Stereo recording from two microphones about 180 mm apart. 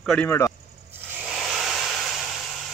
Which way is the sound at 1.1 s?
Centre (ahead or behind).